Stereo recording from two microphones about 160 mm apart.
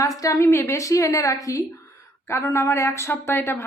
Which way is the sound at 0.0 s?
20° left (ahead or behind).